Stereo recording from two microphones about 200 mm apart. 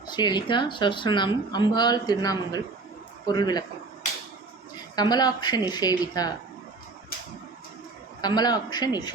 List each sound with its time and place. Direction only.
0.1 s speech: 20° left (ahead or behind)
4.9 s speech: 20° left (ahead or behind)
8.2 s speech: 20° left (ahead or behind)